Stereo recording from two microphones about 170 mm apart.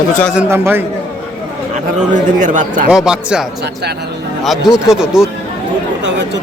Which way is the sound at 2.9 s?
5° right (ahead or behind).